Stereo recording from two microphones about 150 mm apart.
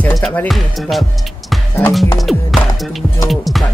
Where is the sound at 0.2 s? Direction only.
10° left (ahead or behind).